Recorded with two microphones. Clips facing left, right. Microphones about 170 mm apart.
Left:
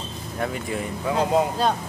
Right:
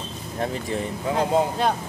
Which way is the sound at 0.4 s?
30° right (ahead or behind).